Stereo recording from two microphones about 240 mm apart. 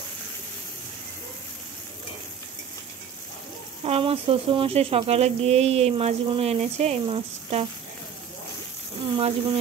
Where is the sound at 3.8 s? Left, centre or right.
Right.